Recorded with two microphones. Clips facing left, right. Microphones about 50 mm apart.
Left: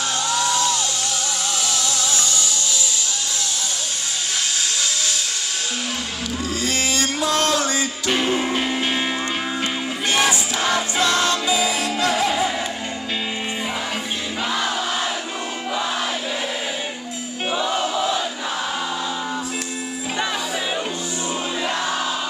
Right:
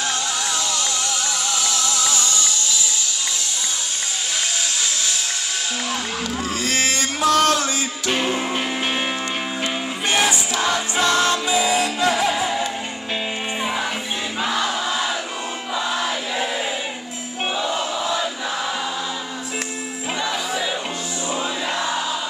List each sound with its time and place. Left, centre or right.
6.6 s boat: right
7.2 s music: right
8.1 s music: right
11.0 s music: right